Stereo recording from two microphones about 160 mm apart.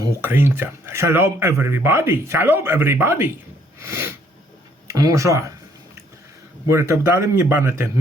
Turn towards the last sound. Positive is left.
turn(degrees=-15)  # may be behind; listen again after turning